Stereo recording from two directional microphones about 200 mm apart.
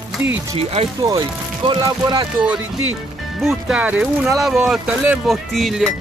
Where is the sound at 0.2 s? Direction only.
10° right (ahead or behind).